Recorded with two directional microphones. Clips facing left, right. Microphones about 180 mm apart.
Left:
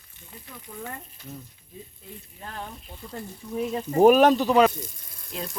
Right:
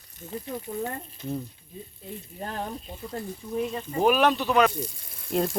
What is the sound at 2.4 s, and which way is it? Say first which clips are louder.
Speech: right 5 dB; 40° right (ahead or behind).